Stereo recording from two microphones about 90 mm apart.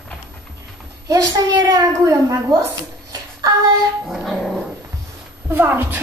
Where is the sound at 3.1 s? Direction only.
45° right (ahead or behind).